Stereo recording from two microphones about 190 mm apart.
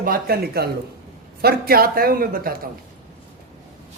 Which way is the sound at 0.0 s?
50° right (ahead or behind).